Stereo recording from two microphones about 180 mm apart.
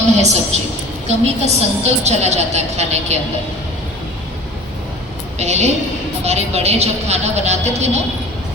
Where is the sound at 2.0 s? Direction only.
40° right (ahead or behind).